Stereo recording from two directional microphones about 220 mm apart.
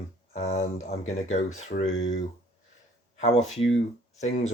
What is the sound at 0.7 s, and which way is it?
Speech, 65° left (ahead or behind).